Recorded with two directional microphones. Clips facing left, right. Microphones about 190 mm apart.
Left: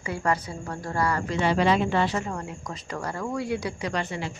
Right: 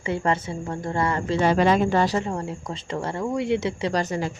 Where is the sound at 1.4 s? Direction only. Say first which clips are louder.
Right 3 dB; 45° right (ahead or behind); by 3.9 s 25° right (ahead or behind).